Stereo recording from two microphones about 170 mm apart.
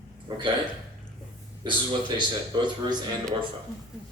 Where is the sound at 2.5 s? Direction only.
25° right (ahead or behind).